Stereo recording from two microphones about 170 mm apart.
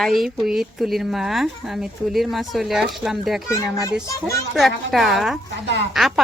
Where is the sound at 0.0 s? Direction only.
Centre (ahead or behind).